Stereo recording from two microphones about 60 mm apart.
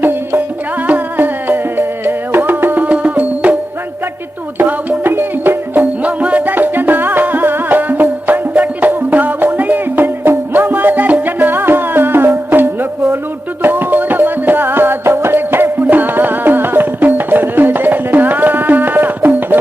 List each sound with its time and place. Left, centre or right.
0.0 s music: right